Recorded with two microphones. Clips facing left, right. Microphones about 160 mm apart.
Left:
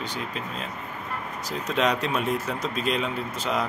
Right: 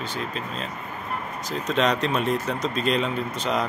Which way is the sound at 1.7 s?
10° left (ahead or behind).